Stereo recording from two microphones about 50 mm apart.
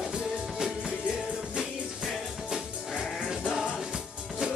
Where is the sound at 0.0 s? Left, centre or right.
Centre.